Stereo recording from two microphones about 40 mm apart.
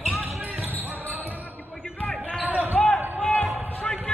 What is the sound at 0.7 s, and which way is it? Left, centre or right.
Basketball bounce, right.